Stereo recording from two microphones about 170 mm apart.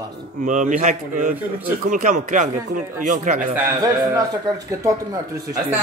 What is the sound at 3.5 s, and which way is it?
Speech, 10° right (ahead or behind).